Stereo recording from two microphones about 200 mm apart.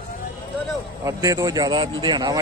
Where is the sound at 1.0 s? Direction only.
15° right (ahead or behind).